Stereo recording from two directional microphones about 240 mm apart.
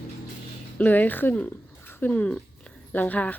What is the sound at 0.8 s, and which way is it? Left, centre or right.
Speech, centre.